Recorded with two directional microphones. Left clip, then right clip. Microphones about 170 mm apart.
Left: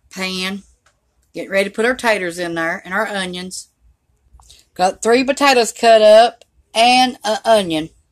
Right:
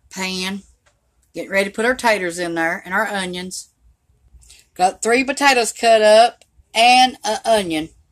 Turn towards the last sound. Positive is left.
turn(degrees=10)  # may be behind; listen again after turning